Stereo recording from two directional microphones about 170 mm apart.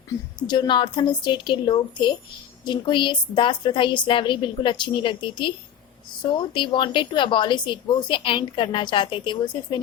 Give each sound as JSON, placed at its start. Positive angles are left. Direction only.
{"t": 0.3, "sound": "a woman's voice", "side_deg": 25}